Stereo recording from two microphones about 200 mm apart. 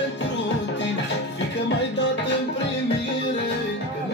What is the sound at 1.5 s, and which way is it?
Music, 60° left (ahead or behind).